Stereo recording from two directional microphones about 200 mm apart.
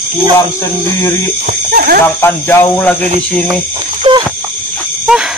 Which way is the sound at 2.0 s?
10° left (ahead or behind).